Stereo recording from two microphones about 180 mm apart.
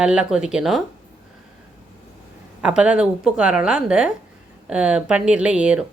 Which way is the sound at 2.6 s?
5° right (ahead or behind).